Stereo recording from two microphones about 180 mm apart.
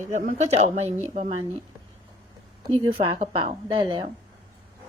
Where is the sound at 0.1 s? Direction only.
45° right (ahead or behind).